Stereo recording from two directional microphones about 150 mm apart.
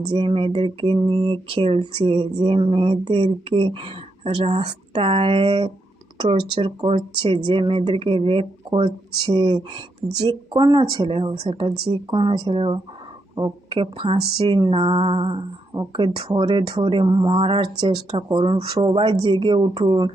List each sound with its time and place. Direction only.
0.1 s speech: 35° right (ahead or behind)